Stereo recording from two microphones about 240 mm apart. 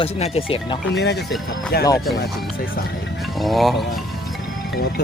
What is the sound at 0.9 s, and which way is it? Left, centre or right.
Speech, left.